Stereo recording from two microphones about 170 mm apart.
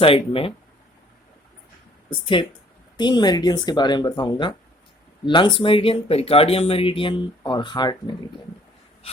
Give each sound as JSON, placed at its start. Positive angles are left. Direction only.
{"t": 0.0, "sound": "speech", "side_deg": 30}
{"t": 2.0, "sound": "speech", "side_deg": 30}